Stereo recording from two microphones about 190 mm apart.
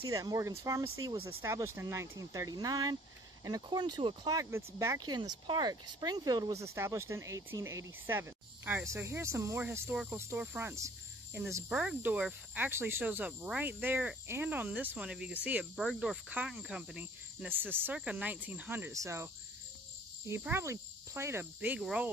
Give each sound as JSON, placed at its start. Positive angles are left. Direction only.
{"t": 0.1, "sound": "speech", "side_deg": -15}
{"t": 20.2, "sound": "speech", "side_deg": -15}